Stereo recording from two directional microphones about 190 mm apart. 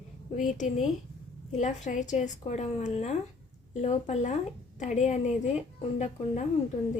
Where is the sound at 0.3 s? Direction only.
40° left (ahead or behind).